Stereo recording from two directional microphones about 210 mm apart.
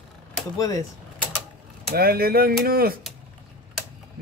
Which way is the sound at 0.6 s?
15° left (ahead or behind).